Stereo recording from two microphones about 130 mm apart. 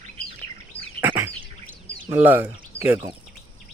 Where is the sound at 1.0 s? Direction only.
15° right (ahead or behind).